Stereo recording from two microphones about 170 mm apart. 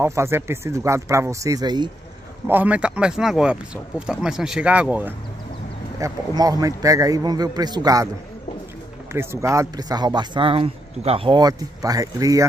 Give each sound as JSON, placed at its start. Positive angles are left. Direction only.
{"t": 0.0, "sound": "speech", "side_deg": -15}
{"t": 2.4, "sound": "speech", "side_deg": -10}
{"t": 5.9, "sound": "speech", "side_deg": -20}
{"t": 9.1, "sound": "speech", "side_deg": -15}